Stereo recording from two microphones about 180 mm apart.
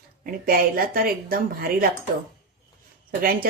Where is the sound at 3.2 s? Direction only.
55° right (ahead or behind).